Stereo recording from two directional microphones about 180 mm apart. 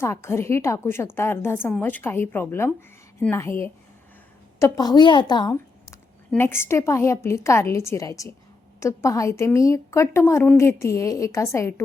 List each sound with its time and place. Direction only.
0.0 s a woman's voice: 15° left (ahead or behind)